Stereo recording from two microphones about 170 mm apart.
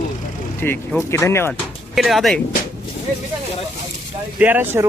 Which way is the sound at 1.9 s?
Centre (ahead or behind).